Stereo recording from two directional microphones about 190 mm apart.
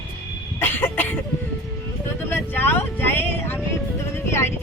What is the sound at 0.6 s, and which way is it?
Cough, 10° left (ahead or behind).